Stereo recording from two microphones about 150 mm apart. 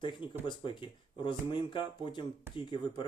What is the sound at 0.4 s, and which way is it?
Speech, 30° left (ahead or behind).